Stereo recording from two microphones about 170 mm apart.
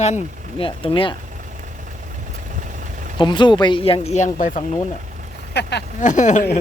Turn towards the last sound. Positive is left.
turn(degrees=45)  # may be behind; listen again after turning